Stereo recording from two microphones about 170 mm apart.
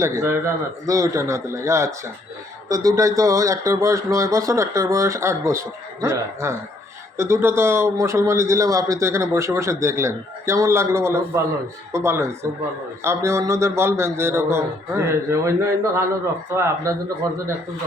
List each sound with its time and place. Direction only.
0.0 s a man's voice: 15° right (ahead or behind)